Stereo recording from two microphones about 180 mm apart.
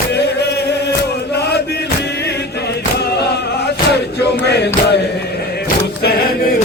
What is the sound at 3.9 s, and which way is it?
Music, 65° left (ahead or behind).